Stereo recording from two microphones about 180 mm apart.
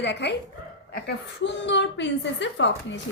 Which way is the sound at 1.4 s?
85° left.